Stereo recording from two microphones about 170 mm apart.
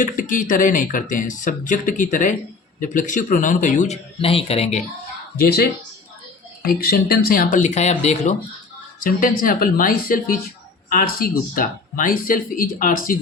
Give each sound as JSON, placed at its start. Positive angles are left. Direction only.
{"t": 0.0, "sound": "speech", "side_deg": 50}
{"t": 5.4, "sound": "speech", "side_deg": 70}
{"t": 9.0, "sound": "speech", "side_deg": 55}